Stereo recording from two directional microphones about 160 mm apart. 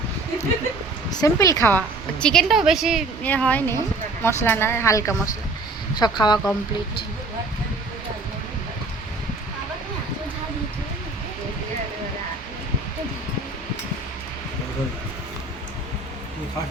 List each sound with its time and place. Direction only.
1.1 s speech: 20° left (ahead or behind)
2.2 s a woman's voice: 5° left (ahead or behind)
3.2 s speech: 10° left (ahead or behind); by 6.4 s 25° left (ahead or behind)